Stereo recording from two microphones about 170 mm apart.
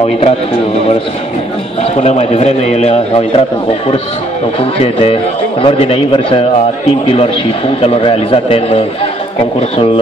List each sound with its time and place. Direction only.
2.0 s a man's voice: 40° left (ahead or behind)
4.6 s a man's voice: 35° left (ahead or behind)